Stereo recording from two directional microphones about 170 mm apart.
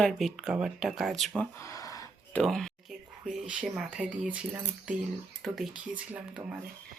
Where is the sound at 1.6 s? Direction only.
20° left (ahead or behind).